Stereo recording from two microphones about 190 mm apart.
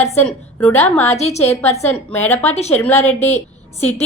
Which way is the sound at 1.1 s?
35° left (ahead or behind).